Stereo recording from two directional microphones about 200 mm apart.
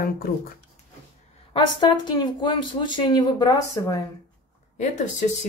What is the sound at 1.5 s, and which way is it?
Speech, 20° left (ahead or behind).